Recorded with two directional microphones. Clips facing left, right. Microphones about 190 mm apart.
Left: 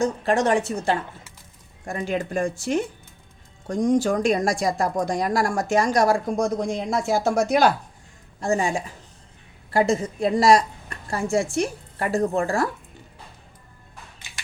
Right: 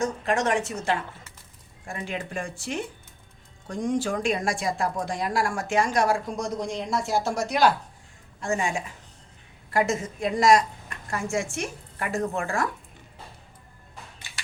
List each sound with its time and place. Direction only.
0.0 s speech: 35° left (ahead or behind); by 7.7 s 50° left (ahead or behind)
8.4 s speech: 35° left (ahead or behind)